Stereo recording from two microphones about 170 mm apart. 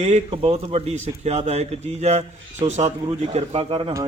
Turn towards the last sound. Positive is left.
turn(degrees=-35)  # may be behind; listen again after turning